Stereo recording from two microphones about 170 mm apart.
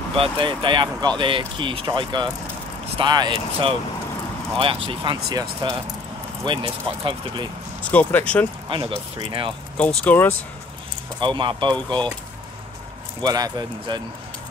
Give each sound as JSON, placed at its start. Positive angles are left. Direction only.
{"t": 0.2, "sound": "speech", "side_deg": -30}
{"t": 4.8, "sound": "speech", "side_deg": -30}
{"t": 7.8, "sound": "speech", "side_deg": 10}
{"t": 8.6, "sound": "speech", "side_deg": -30}
{"t": 9.8, "sound": "speech", "side_deg": 10}
{"t": 11.1, "sound": "speech", "side_deg": -30}
{"t": 13.2, "sound": "speech", "side_deg": -25}